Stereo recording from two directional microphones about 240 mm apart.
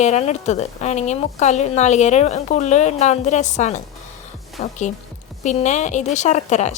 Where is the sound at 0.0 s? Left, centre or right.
Left.